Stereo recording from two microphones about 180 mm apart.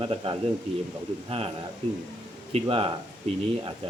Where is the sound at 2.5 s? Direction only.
30° right (ahead or behind).